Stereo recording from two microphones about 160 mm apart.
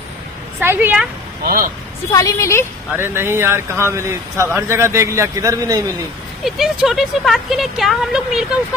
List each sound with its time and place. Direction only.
0.6 s speech: 15° right (ahead or behind)
1.4 s speech: 65° right (ahead or behind)
2.0 s a woman's voice: 20° left (ahead or behind)
3.0 s speech: 15° right (ahead or behind)
6.4 s speech: centre (ahead or behind)